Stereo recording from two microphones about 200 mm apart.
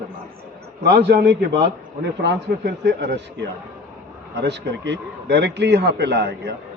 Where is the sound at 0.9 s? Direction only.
55° right (ahead or behind).